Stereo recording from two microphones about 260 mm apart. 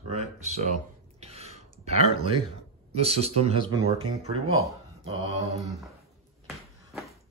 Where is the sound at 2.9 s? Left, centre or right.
Right.